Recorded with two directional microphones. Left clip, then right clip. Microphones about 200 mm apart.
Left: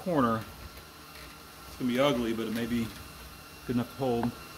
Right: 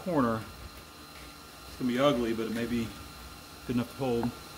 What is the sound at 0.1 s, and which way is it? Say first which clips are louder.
Speech: left 1 dB; 25° left (ahead or behind).